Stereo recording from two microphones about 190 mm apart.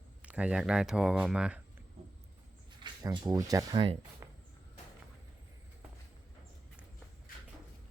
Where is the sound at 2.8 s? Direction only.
20° right (ahead or behind).